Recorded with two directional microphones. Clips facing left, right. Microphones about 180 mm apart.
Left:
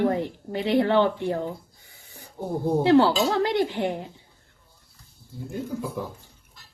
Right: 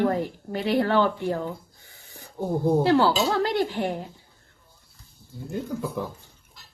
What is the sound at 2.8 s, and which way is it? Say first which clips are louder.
Speech: left 7 dB; 25° left (ahead or behind).